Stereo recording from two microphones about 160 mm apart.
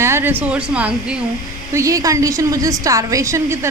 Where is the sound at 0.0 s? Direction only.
15° right (ahead or behind).